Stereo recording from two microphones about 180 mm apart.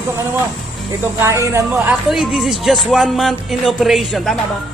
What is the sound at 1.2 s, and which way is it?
Speech, 15° right (ahead or behind).